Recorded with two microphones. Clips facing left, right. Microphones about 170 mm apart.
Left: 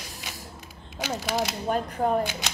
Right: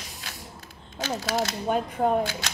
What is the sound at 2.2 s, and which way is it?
Speech, 20° left (ahead or behind).